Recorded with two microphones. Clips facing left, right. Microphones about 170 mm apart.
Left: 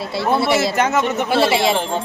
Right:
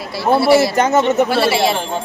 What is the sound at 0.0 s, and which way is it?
Speech, 25° left (ahead or behind).